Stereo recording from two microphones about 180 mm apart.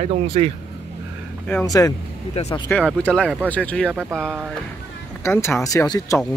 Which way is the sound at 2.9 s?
5° left (ahead or behind).